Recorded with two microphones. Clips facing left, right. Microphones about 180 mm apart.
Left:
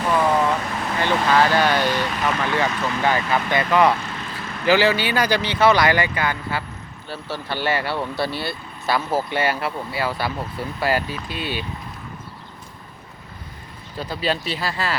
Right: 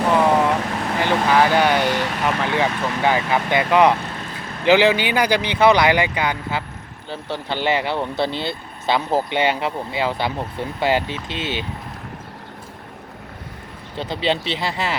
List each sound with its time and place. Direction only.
0.9 s speech: 15° right (ahead or behind)
13.9 s speech: 25° right (ahead or behind)